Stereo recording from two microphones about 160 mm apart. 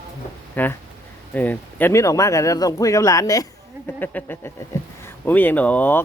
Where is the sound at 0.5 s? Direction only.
10° left (ahead or behind).